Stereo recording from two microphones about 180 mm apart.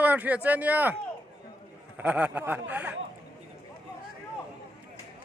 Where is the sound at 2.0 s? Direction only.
10° right (ahead or behind).